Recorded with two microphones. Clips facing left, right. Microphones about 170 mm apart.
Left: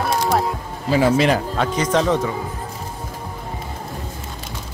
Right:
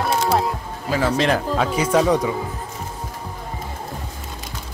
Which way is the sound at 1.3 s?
5° right (ahead or behind).